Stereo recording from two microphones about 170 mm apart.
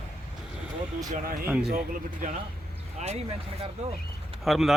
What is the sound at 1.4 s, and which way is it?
Speech, 5° right (ahead or behind).